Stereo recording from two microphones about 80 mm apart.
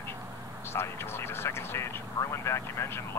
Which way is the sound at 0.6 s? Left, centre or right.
Left.